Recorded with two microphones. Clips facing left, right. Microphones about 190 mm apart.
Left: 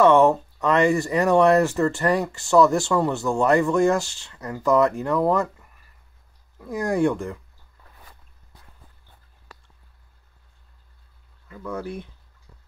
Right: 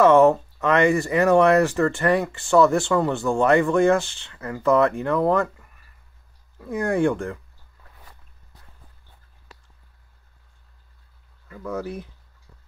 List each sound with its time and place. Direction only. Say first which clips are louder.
0.0 s speech: right 1 dB; centre (ahead or behind)
6.7 s speech: even; centre (ahead or behind)
11.6 s speech: right 1 dB; centre (ahead or behind)